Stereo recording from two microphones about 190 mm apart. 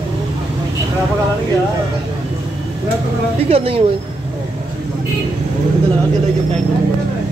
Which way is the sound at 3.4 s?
30° right (ahead or behind).